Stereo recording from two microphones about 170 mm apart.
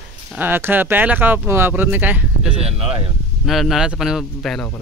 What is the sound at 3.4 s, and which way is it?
Speech, centre (ahead or behind).